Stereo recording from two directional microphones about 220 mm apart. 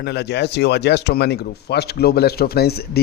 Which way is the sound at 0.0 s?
50° left (ahead or behind).